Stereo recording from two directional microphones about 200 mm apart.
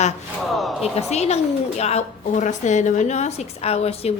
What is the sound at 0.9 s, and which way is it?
Speech, 35° left (ahead or behind).